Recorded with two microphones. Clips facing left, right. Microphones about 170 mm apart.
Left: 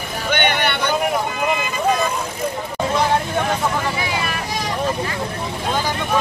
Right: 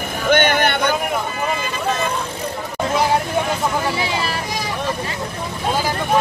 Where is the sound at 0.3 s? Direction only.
45° right (ahead or behind).